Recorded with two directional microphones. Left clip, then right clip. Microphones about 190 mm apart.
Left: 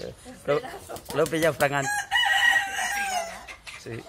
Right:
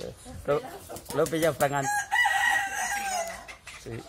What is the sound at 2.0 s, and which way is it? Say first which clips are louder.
Chicken: left 4 dB; 50° left (ahead or behind).